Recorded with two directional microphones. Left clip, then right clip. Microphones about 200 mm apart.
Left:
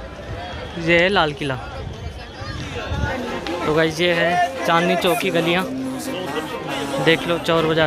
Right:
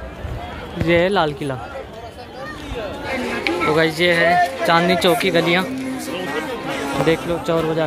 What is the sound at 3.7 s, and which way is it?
Speech, centre (ahead or behind).